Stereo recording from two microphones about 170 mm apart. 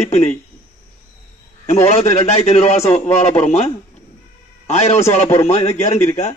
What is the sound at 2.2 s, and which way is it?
Speech, 40° left (ahead or behind).